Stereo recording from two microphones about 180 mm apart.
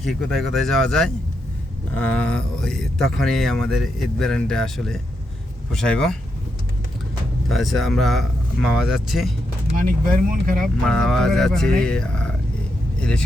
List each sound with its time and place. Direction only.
0.0 s speech: centre (ahead or behind)
7.4 s speech: centre (ahead or behind)
9.8 s speech: 50° right (ahead or behind)
10.8 s speech: 5° left (ahead or behind)